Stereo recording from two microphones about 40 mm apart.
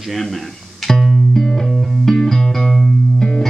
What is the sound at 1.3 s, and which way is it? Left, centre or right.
Music, centre.